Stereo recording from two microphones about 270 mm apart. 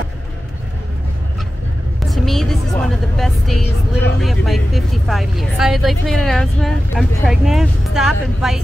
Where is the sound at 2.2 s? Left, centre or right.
Centre.